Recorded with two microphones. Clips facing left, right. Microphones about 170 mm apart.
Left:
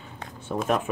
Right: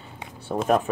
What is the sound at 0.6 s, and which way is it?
Speech, 40° right (ahead or behind).